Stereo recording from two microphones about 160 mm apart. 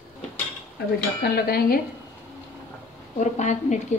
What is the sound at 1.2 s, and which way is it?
Dishes, 80° left.